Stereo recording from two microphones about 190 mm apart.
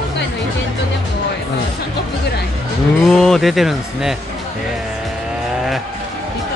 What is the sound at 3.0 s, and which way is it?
Speech, centre (ahead or behind).